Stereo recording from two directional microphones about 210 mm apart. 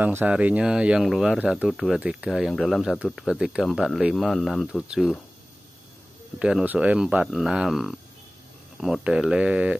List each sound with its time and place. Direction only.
0.0 s speech: 10° right (ahead or behind)
6.4 s speech: 5° right (ahead or behind)